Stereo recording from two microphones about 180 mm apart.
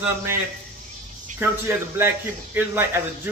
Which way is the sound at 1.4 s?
10° right (ahead or behind).